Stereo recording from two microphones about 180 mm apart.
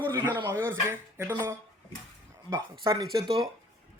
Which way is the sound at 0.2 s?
10° right (ahead or behind).